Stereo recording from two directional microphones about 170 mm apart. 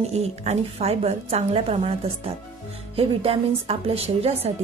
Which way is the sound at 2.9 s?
35° right (ahead or behind).